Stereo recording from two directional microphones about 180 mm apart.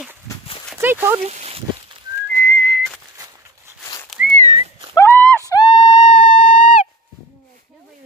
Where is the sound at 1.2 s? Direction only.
35° right (ahead or behind).